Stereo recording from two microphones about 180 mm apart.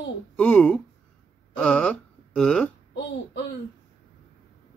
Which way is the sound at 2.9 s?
70° left (ahead or behind).